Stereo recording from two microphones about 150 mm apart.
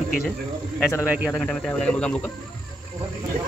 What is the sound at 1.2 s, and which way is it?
Speech, 5° left (ahead or behind).